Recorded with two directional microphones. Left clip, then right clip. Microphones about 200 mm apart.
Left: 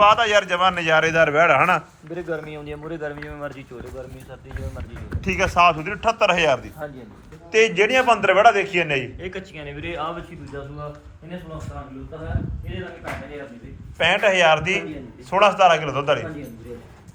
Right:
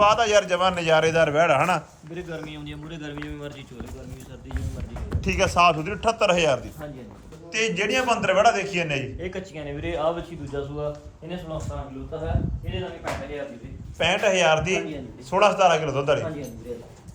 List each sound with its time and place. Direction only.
0.0 s a man's voice: 15° right (ahead or behind)
2.1 s speech: 15° left (ahead or behind)
5.2 s a man's voice: 15° right (ahead or behind)
9.2 s a man's voice: 55° right (ahead or behind)
14.0 s a man's voice: 15° right (ahead or behind)